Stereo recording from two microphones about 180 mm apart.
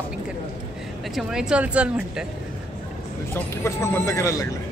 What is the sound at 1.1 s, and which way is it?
Speech, 5° right (ahead or behind).